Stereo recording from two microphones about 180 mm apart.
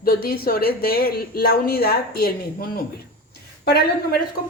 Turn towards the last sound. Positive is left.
turn(degrees=60)  # may be behind; listen again after turning